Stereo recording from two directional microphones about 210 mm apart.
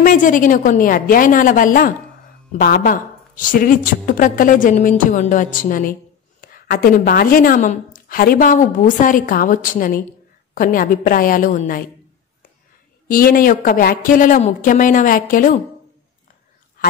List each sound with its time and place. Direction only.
0.0 s a woman's voice: 40° left (ahead or behind)
13.1 s a woman's voice: 45° left (ahead or behind)